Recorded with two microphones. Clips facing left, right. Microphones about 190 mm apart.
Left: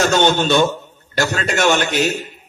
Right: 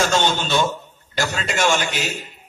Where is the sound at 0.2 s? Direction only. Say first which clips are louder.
Left 6 dB; 60° left (ahead or behind).